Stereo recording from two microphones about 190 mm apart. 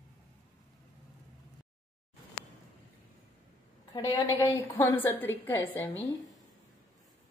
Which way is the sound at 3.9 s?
25° left (ahead or behind).